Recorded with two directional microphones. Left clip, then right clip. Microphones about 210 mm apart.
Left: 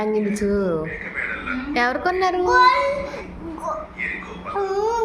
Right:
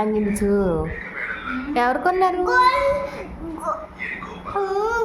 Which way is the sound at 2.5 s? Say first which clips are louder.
Left 3 dB; 20° right (ahead or behind).